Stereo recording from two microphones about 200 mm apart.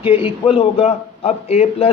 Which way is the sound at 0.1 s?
25° left (ahead or behind).